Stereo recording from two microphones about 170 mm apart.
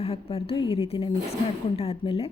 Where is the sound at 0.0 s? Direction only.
35° left (ahead or behind).